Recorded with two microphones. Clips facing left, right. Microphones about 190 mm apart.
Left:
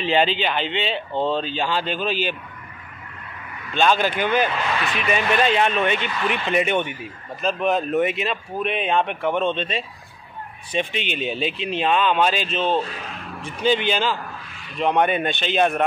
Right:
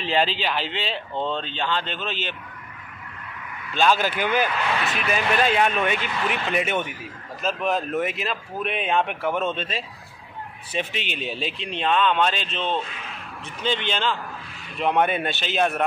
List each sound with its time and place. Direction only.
0.0 s speech: centre (ahead or behind)
3.7 s speech: 5° right (ahead or behind)
12.6 s a man's voice: 35° left (ahead or behind)
13.4 s speech: 10° left (ahead or behind)
14.8 s speech: 5° right (ahead or behind)